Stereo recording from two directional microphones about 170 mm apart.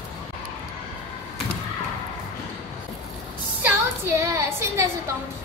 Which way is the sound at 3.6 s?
15° right (ahead or behind).